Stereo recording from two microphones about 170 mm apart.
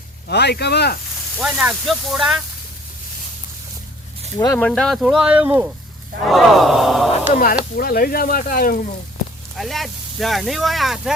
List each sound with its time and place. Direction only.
0.3 s speech: 75° left (ahead or behind)
1.4 s speech: 5° right (ahead or behind)
4.4 s speech: 15° left (ahead or behind)
4.7 s speech: centre (ahead or behind)
7.8 s speech: 60° left (ahead or behind)
9.6 s speech: centre (ahead or behind)